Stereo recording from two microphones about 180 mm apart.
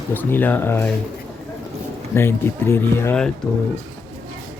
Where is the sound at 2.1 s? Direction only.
15° left (ahead or behind).